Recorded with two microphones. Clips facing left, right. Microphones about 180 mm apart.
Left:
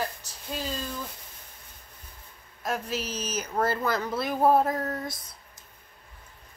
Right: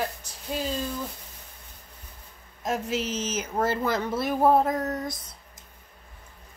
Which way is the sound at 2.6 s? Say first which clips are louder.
Right 3 dB; 20° right (ahead or behind).